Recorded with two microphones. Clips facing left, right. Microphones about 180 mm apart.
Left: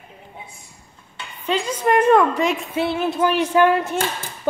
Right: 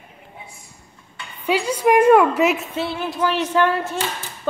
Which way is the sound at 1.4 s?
10° right (ahead or behind).